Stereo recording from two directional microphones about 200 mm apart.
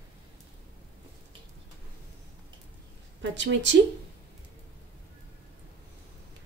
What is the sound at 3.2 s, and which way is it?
Speech, 65° right (ahead or behind).